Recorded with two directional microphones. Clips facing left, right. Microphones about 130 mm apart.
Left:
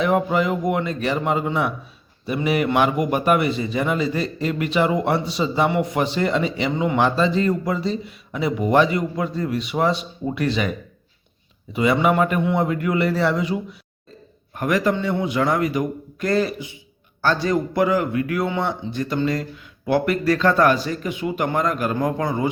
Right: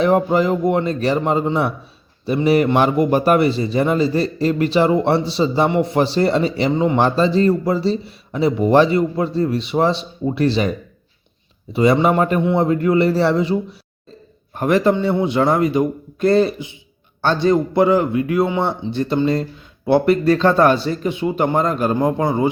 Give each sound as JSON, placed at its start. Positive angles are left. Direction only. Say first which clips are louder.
{"t": 0.0, "sound": "a man's voice", "louder": "right 4 dB", "side_deg": -35}